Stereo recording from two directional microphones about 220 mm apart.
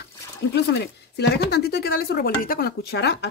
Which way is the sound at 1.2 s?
50° left (ahead or behind).